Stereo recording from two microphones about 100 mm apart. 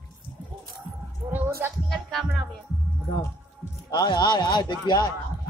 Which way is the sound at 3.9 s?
45° left (ahead or behind).